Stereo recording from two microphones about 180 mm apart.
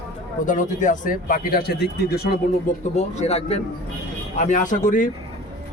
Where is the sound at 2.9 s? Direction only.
35° left (ahead or behind).